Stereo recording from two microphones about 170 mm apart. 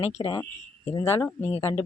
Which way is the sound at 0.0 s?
35° left (ahead or behind).